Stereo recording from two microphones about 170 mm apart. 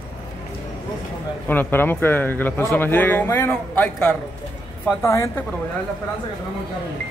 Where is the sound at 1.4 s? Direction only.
10° left (ahead or behind).